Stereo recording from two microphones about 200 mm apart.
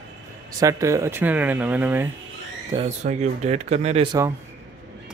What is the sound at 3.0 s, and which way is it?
Speech, 35° right (ahead or behind).